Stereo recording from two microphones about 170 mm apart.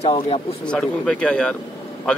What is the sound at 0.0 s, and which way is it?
Speech, 35° left (ahead or behind).